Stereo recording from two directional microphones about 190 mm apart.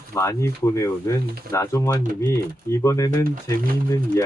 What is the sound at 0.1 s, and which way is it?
Speech, 15° left (ahead or behind).